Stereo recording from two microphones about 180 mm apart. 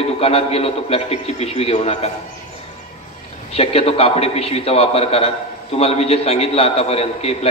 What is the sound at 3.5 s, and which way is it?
A man's voice, 35° left (ahead or behind).